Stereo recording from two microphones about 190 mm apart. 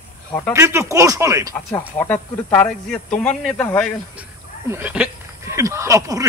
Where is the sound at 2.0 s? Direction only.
10° left (ahead or behind).